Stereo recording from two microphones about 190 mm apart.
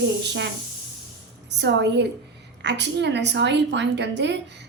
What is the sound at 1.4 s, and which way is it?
A woman's voice, 65° right (ahead or behind).